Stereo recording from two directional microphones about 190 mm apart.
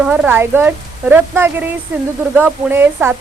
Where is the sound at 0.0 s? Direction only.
5° right (ahead or behind).